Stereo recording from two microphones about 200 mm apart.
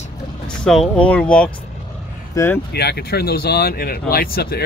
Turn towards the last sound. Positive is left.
turn(degrees=50)  # may be behind; listen again after turning